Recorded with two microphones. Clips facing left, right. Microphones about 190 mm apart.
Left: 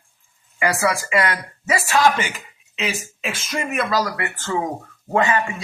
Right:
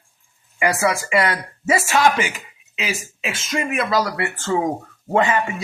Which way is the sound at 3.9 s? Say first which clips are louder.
Right 2 dB; 30° right (ahead or behind).